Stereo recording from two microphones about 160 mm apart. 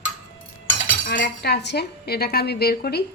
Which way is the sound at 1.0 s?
60° left (ahead or behind).